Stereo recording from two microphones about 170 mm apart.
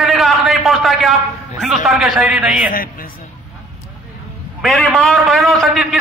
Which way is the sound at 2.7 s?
60° left (ahead or behind).